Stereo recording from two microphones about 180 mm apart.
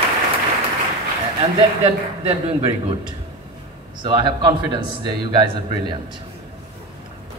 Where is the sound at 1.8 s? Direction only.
30° right (ahead or behind).